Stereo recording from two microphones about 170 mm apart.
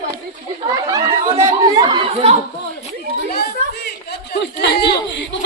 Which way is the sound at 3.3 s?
65° left (ahead or behind).